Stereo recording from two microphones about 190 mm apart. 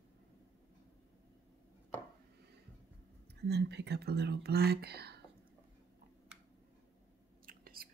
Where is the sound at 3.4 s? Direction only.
60° right (ahead or behind).